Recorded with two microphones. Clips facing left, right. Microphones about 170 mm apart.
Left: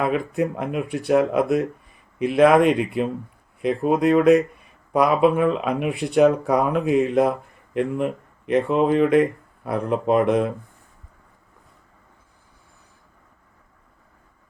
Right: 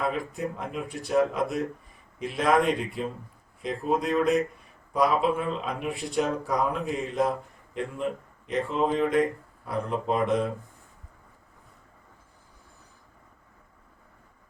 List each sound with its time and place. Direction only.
0.0 s speech: 65° left (ahead or behind)